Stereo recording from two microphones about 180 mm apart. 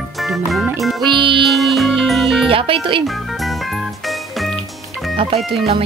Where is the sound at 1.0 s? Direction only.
25° right (ahead or behind).